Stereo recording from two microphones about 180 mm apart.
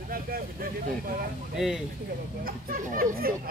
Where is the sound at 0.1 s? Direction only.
55° right (ahead or behind).